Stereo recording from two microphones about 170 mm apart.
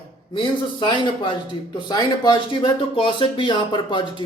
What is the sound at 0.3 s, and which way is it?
A man's voice, 30° left (ahead or behind).